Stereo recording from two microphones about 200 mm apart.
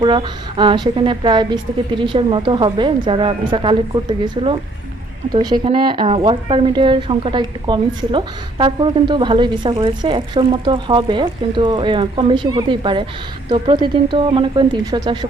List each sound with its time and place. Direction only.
0.0 s a woman's voice: 25° right (ahead or behind)